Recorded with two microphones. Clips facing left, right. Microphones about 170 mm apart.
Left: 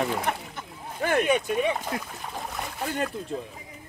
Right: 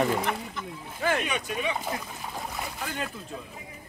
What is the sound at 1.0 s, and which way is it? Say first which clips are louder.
Speech: left 5 dB; 50° left (ahead or behind).